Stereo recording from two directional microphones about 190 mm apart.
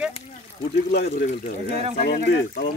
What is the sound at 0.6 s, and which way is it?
Speech, 60° left (ahead or behind).